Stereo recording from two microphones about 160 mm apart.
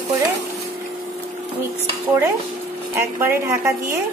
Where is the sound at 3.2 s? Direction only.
15° right (ahead or behind).